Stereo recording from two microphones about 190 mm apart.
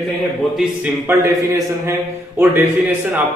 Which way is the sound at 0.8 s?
15° right (ahead or behind).